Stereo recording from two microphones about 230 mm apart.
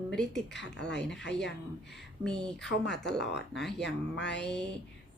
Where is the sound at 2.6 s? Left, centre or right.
Left.